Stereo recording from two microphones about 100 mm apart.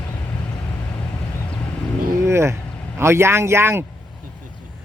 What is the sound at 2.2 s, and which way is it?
Speech, 25° right (ahead or behind).